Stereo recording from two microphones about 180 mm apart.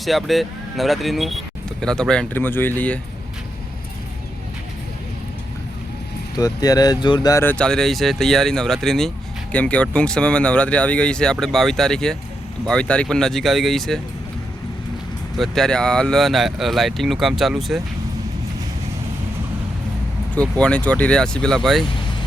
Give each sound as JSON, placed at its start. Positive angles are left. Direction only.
{"t": 0.0, "sound": "speech", "side_deg": 0}
{"t": 6.3, "sound": "speech", "side_deg": 20}
{"t": 7.6, "sound": "speech", "side_deg": 5}
{"t": 15.4, "sound": "speech", "side_deg": 0}
{"t": 20.3, "sound": "speech", "side_deg": 5}